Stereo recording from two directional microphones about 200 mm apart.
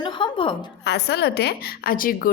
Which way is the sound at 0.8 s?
55° left (ahead or behind).